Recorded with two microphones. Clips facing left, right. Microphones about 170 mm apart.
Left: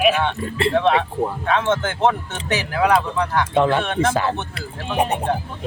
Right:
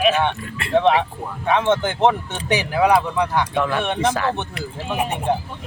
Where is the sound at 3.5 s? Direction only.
25° left (ahead or behind).